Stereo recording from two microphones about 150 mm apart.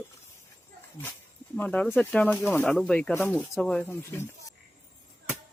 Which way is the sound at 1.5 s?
10° left (ahead or behind).